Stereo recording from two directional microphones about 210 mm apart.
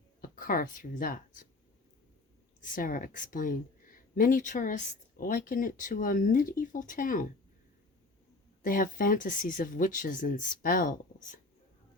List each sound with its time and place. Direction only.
0.2 s speech: 40° left (ahead or behind)
2.6 s speech: 40° left (ahead or behind)
8.6 s speech: 40° left (ahead or behind)